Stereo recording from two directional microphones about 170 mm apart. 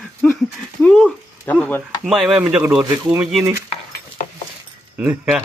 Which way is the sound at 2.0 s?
5° right (ahead or behind).